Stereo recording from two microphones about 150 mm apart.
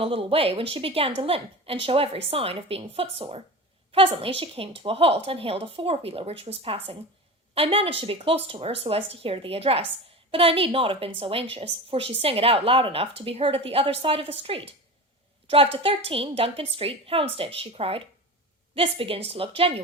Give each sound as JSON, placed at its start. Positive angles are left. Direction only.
{"t": 0.0, "sound": "a woman's voice", "side_deg": -40}